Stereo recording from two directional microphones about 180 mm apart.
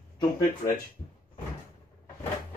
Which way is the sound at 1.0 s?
30° left (ahead or behind).